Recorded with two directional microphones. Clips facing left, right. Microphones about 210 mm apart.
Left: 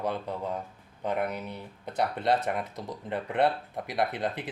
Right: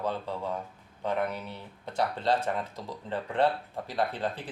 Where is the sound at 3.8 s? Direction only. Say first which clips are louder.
Left 1 dB; 15° left (ahead or behind).